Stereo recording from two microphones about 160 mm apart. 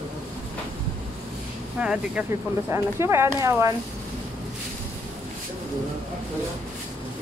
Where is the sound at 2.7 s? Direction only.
15° right (ahead or behind).